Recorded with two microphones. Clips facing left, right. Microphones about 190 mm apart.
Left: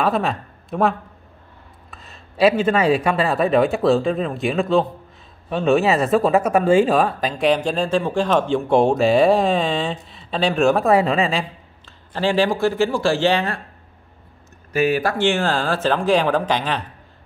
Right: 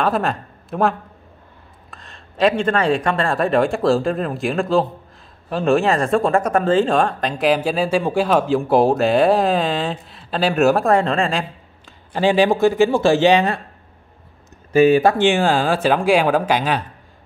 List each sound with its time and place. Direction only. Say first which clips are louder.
0.0 s speech: even; centre (ahead or behind)
11.8 s speech: right 4 dB; 15° right (ahead or behind)
14.7 s speech: right 6 dB; 25° right (ahead or behind); by 16.8 s 10° right (ahead or behind)